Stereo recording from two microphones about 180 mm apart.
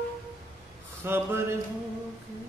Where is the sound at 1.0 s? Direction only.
15° right (ahead or behind).